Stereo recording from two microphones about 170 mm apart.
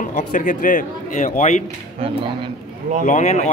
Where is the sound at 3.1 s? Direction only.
45° left (ahead or behind).